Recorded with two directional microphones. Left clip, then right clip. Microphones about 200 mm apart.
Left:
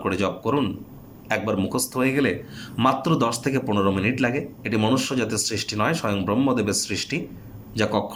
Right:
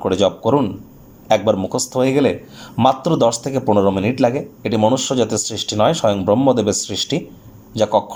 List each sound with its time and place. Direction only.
0.0 s speech: 20° right (ahead or behind)